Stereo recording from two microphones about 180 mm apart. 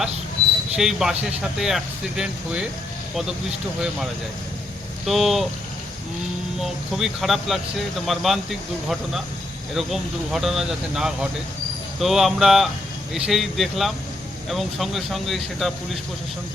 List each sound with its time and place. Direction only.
0.8 s speech: centre (ahead or behind)
5.0 s speech: centre (ahead or behind)
6.6 s speech: centre (ahead or behind)